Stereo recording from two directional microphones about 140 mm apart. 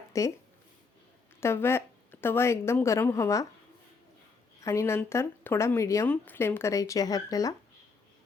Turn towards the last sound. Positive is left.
turn(degrees=25)  # may be behind; listen again after turning